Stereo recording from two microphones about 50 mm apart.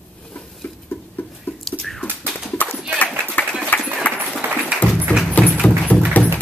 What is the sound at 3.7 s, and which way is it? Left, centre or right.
Run, left.